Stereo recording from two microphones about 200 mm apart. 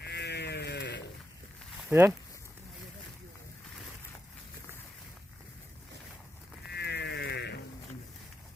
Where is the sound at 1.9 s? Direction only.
10° right (ahead or behind).